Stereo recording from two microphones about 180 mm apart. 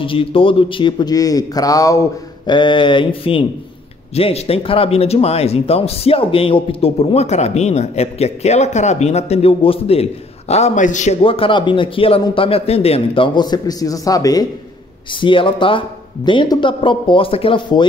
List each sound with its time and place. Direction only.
0.0 s a man's voice: 30° left (ahead or behind)
11.2 s a man's voice: 30° left (ahead or behind)